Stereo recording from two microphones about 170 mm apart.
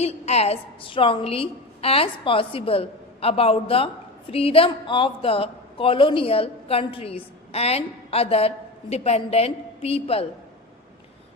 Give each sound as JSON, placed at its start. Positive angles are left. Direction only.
{"t": 0.0, "sound": "a woman's voice", "side_deg": 40}